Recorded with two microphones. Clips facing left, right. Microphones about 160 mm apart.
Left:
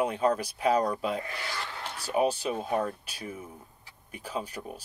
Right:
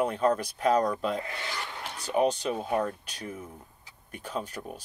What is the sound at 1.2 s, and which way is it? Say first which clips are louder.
Filing: even; 25° right (ahead or behind).